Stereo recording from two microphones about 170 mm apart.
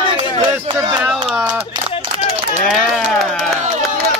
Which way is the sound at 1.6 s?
35° right (ahead or behind).